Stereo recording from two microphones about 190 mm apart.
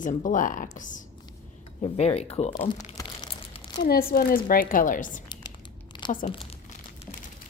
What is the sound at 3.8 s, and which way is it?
Speech, 55° left (ahead or behind).